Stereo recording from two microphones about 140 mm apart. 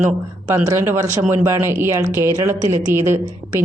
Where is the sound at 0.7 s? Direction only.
15° right (ahead or behind).